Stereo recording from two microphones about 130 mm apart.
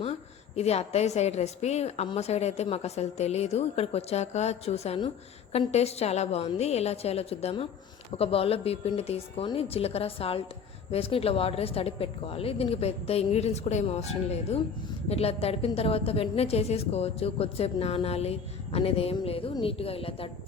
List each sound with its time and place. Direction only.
0.0 s a woman's voice: 55° left (ahead or behind)